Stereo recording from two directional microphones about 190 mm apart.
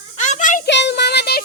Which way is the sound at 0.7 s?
65° left (ahead or behind).